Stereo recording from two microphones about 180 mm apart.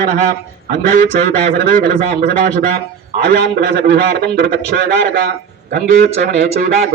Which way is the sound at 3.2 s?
60° right (ahead or behind).